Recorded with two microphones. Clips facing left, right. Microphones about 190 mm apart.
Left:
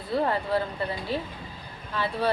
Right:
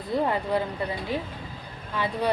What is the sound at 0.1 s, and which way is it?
Speech, 15° right (ahead or behind).